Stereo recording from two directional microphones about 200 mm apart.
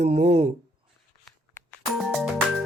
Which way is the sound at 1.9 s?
Centre (ahead or behind).